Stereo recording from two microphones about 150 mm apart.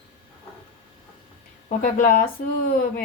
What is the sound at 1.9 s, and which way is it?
A woman's voice, 65° left (ahead or behind).